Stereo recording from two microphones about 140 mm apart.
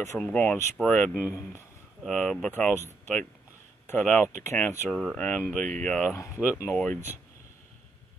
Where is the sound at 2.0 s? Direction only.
5° left (ahead or behind).